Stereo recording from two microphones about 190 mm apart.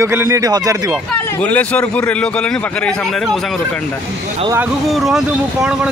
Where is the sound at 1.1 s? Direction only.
5° left (ahead or behind).